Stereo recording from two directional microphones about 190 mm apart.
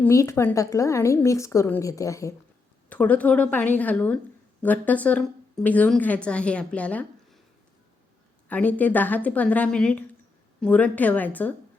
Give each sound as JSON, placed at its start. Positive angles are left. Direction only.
{"t": 0.0, "sound": "a woman's voice", "side_deg": 15}
{"t": 8.4, "sound": "a woman's voice", "side_deg": 10}